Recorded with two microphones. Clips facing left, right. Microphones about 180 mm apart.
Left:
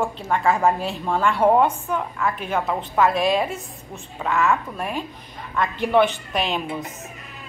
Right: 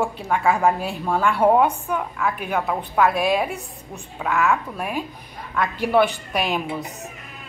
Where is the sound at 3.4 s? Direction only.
15° right (ahead or behind).